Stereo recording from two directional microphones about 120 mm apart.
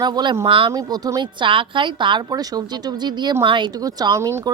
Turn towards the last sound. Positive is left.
turn(degrees=-25)  # may be behind; listen again after turning